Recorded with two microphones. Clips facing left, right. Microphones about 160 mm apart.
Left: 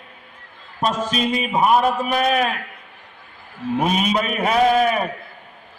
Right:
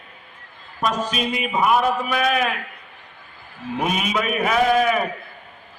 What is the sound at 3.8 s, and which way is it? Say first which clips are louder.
A man's voice: left 2 dB; 35° left (ahead or behind).